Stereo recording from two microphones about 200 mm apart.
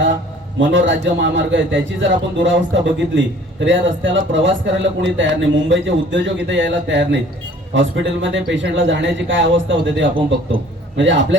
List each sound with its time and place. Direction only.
0.6 s a man's voice: 65° right (ahead or behind)